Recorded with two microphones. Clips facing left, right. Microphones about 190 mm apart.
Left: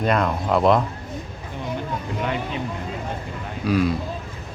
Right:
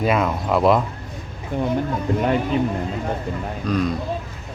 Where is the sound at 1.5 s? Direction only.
50° right (ahead or behind).